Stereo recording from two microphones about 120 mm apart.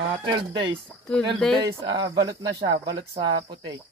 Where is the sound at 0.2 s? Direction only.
40° right (ahead or behind).